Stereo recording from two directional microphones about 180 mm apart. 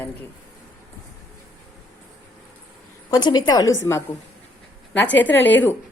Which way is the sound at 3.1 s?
25° left (ahead or behind).